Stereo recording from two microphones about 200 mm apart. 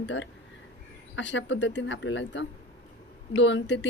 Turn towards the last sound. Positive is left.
turn(degrees=65)  # may be behind; listen again after turning